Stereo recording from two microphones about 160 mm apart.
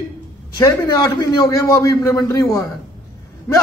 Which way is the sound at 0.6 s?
20° left (ahead or behind).